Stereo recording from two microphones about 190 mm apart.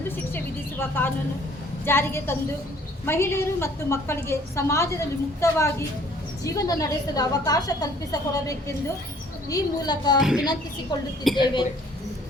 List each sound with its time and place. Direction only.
0.3 s a sound: 10° left (ahead or behind)
1.8 s a woman's voice: 10° left (ahead or behind)
10.2 s speech: centre (ahead or behind)